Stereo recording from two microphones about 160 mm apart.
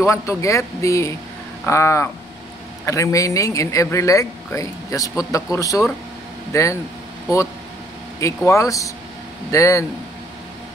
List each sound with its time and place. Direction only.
0.0 s speech: 20° left (ahead or behind)
8.5 s speech: 20° left (ahead or behind)